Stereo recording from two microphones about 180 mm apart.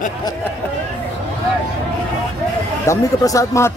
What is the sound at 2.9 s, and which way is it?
Speech, 15° left (ahead or behind).